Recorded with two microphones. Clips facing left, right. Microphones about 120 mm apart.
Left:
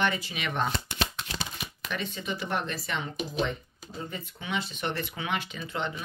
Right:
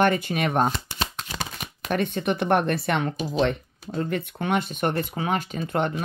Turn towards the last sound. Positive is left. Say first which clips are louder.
# right 8 dB
turn(degrees=-50)  # may be behind; listen again after turning